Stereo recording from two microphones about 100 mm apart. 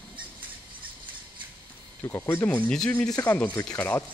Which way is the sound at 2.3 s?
15° left (ahead or behind).